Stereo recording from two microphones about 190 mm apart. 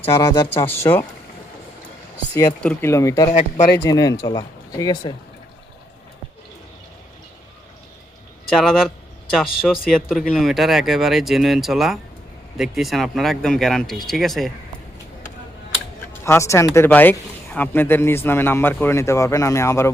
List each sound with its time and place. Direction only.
0.2 s speech: 15° left (ahead or behind)
2.5 s speech: 5° left (ahead or behind); by 5.1 s 20° left (ahead or behind)
8.4 s speech: centre (ahead or behind)
16.2 s speech: 15° left (ahead or behind)